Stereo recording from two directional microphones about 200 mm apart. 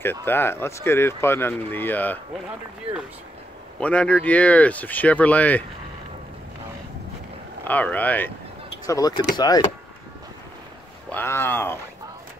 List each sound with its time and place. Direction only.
0.0 s speech: 10° left (ahead or behind)
2.9 s speech: 30° right (ahead or behind)
3.8 s speech: 5° left (ahead or behind)
7.6 s speech: 10° left (ahead or behind)
11.1 s speech: 10° left (ahead or behind)